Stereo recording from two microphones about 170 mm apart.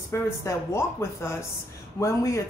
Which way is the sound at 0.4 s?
15° left (ahead or behind).